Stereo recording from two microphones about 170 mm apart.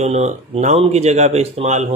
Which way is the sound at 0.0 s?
40° right (ahead or behind).